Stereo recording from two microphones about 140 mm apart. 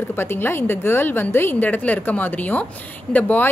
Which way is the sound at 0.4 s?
15° left (ahead or behind).